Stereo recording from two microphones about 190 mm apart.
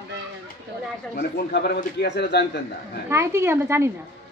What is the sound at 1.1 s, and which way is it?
A man's voice, 55° left (ahead or behind).